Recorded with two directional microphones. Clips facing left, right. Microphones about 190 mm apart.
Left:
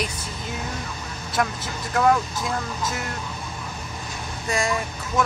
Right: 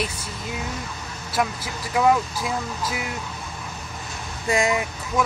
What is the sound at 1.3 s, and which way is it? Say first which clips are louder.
Speech: even; 5° right (ahead or behind).